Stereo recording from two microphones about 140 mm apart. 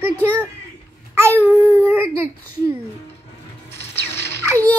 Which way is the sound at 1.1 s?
15° right (ahead or behind).